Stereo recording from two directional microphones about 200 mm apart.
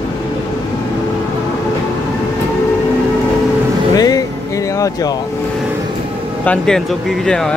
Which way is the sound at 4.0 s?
20° left (ahead or behind).